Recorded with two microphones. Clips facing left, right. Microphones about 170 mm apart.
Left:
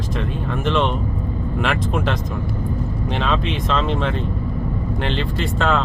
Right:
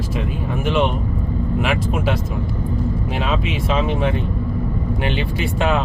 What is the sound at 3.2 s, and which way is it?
Speech, 5° right (ahead or behind).